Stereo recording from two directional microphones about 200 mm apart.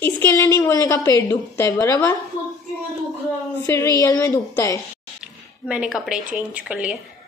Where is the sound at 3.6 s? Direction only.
15° left (ahead or behind).